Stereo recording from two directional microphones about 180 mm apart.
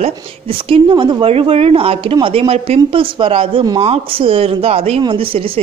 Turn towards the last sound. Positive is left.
turn(degrees=-30)  # may be behind; listen again after turning